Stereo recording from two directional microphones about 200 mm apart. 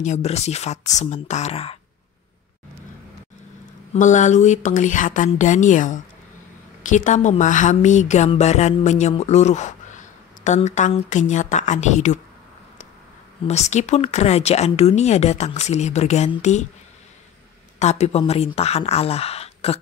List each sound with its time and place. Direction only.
0.0 s a woman's voice: 35° left (ahead or behind)
3.9 s a woman's voice: 40° left (ahead or behind)
13.5 s a woman's voice: 35° left (ahead or behind)
17.7 s a woman's voice: 35° left (ahead or behind)